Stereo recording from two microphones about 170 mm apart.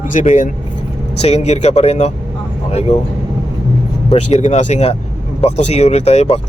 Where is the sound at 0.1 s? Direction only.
45° left (ahead or behind).